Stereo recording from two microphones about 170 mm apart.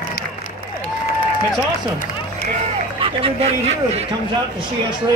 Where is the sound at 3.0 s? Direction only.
35° right (ahead or behind).